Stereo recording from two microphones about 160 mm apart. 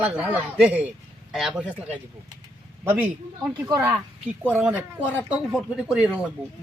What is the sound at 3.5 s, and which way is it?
Speech, 20° right (ahead or behind).